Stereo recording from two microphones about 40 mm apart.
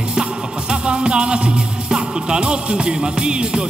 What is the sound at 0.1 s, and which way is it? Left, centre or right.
Music, right.